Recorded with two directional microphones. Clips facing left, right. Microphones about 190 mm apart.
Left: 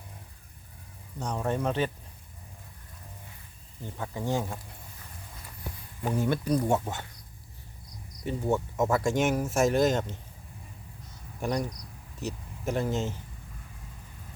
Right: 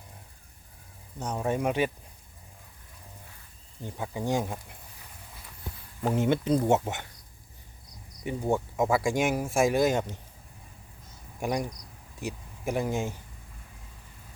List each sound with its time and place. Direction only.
1.2 s speech: 10° right (ahead or behind)
3.9 s speech: 10° right (ahead or behind)
6.0 s speech: 20° right (ahead or behind)
8.2 s speech: 15° right (ahead or behind)
11.3 s speech: 10° right (ahead or behind)